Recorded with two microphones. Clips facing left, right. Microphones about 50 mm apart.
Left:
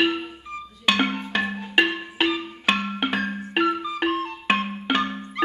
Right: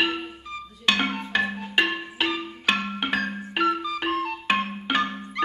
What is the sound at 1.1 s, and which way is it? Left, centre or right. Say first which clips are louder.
Marimba: even; centre.